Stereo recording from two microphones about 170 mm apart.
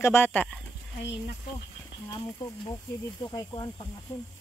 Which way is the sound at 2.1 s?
25° left (ahead or behind).